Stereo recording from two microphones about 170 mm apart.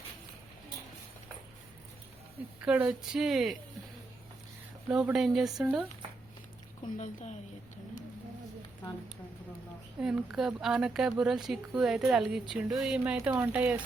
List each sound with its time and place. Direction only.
2.6 s speech: 10° right (ahead or behind)
4.9 s speech: 5° right (ahead or behind)
6.9 s a woman's voice: 45° left (ahead or behind)
10.0 s speech: 5° right (ahead or behind)
13.1 s speech: 15° right (ahead or behind)